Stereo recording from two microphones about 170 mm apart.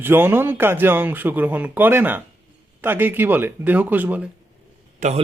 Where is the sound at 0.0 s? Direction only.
10° right (ahead or behind).